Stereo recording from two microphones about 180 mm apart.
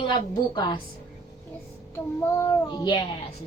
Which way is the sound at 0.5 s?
25° left (ahead or behind).